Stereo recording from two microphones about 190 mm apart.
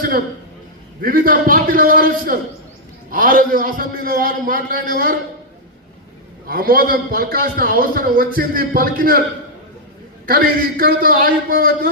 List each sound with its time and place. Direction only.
1.0 s a man's voice: 50° right (ahead or behind)
6.5 s a man's voice: 50° right (ahead or behind)
10.2 s a man's voice: 50° right (ahead or behind)